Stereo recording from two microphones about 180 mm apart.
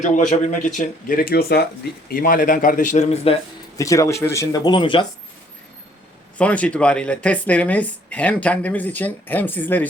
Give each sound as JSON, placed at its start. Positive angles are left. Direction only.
{"t": 0.0, "sound": "speech", "side_deg": 40}
{"t": 3.8, "sound": "speech", "side_deg": 20}
{"t": 6.3, "sound": "speech", "side_deg": 5}